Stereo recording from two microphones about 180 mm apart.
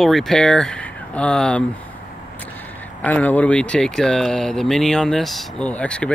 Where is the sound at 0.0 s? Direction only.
Centre (ahead or behind).